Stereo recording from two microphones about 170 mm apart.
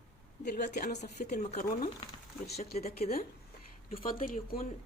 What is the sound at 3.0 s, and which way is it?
Speech, 60° left (ahead or behind).